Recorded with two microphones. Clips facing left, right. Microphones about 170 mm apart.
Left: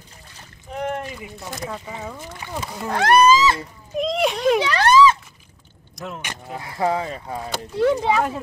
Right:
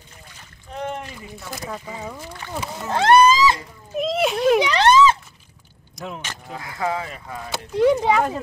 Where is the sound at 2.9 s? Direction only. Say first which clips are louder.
Right 2 dB; 25° right (ahead or behind).